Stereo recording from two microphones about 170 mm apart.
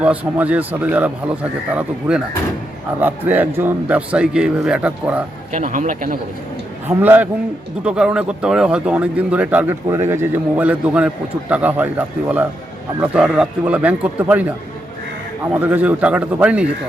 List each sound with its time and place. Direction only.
0.0 s speech: 10° right (ahead or behind)
5.5 s speech: 45° right (ahead or behind)
6.8 s speech: 10° right (ahead or behind)
15.5 s speech: 10° right (ahead or behind)